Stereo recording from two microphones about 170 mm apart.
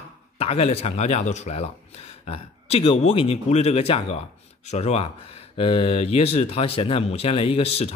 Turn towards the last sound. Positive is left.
turn(degrees=35)  # may be behind; listen again after turning